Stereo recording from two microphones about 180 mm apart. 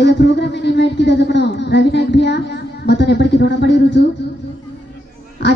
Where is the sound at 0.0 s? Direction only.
75° left (ahead or behind).